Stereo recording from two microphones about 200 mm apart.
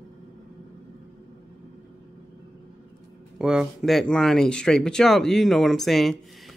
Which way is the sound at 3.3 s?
5° right (ahead or behind).